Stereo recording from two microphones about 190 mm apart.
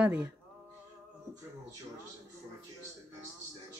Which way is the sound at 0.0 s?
10° right (ahead or behind).